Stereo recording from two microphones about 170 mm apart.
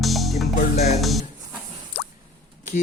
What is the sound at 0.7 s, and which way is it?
Music, 40° left (ahead or behind).